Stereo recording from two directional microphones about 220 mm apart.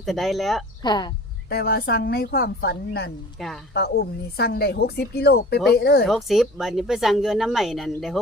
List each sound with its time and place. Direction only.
0.0 s speech: centre (ahead or behind)
0.8 s speech: 20° left (ahead or behind)
1.5 s speech: 45° left (ahead or behind)
6.1 s speech: centre (ahead or behind)